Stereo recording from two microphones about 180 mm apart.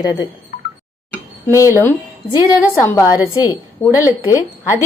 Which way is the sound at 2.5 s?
15° left (ahead or behind).